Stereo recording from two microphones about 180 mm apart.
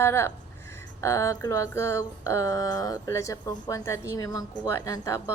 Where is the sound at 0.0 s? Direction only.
15° left (ahead or behind).